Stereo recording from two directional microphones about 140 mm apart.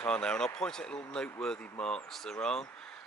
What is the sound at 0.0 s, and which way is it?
Speech, 5° left (ahead or behind).